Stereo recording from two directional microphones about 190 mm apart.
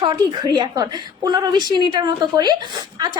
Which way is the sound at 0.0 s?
25° right (ahead or behind).